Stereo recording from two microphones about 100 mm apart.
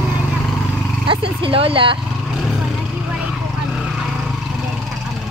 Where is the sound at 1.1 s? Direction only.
60° right (ahead or behind).